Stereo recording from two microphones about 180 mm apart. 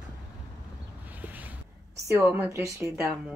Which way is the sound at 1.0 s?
10° right (ahead or behind).